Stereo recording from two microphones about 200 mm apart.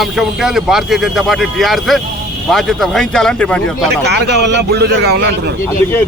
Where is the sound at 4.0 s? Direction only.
55° right (ahead or behind).